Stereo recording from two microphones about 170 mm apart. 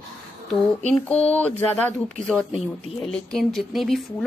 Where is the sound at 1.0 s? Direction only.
10° left (ahead or behind).